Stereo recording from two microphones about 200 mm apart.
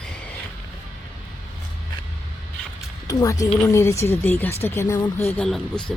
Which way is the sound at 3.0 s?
15° left (ahead or behind).